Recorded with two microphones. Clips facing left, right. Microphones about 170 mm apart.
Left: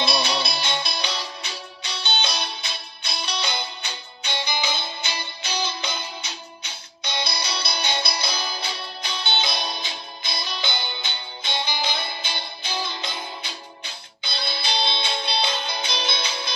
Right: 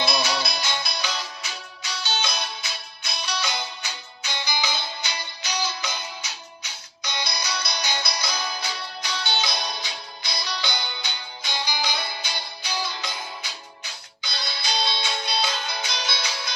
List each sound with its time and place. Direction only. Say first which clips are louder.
0.0 s music: left 1 dB; 30° left (ahead or behind)